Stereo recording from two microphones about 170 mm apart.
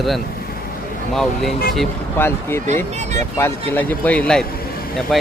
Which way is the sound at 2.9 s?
40° right (ahead or behind).